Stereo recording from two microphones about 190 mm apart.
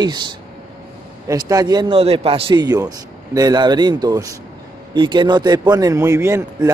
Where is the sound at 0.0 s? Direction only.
20° right (ahead or behind).